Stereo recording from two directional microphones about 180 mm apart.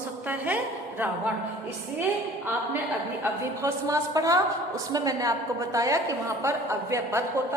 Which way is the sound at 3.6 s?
20° right (ahead or behind).